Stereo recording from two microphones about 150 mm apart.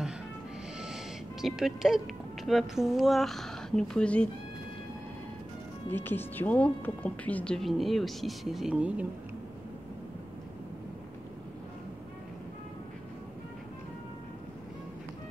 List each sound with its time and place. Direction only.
1.4 s a woman's voice: centre (ahead or behind)
5.9 s a woman's voice: 15° left (ahead or behind); by 9.0 s 10° right (ahead or behind)